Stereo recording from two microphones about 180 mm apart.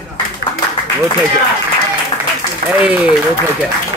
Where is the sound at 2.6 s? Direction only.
5° right (ahead or behind).